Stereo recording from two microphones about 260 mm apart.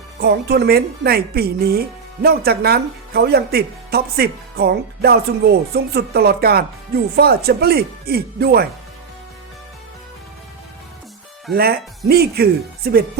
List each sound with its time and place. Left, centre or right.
0.2 s speech: right
11.5 s speech: right